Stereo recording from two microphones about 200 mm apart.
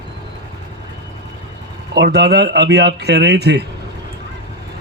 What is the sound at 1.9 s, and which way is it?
A man's voice, 55° right (ahead or behind).